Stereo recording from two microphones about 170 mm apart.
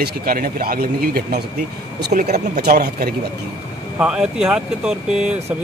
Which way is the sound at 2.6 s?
70° right (ahead or behind).